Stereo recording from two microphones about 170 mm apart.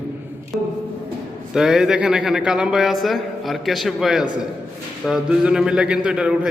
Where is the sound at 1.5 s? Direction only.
5° right (ahead or behind).